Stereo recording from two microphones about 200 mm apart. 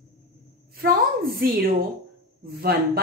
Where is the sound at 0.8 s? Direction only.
50° right (ahead or behind).